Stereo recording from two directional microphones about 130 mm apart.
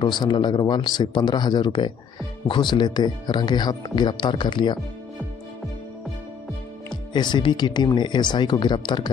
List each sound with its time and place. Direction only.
0.0 s speech: 35° left (ahead or behind)
7.1 s speech: 35° left (ahead or behind)